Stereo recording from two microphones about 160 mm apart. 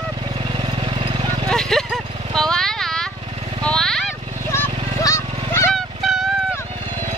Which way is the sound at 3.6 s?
5° left (ahead or behind).